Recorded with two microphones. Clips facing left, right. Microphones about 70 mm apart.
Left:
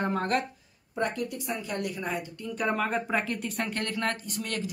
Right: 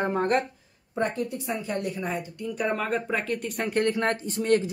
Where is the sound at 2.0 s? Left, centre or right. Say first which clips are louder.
Right 2 dB; centre.